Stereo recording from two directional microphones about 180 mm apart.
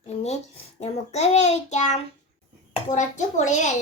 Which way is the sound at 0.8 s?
40° left (ahead or behind).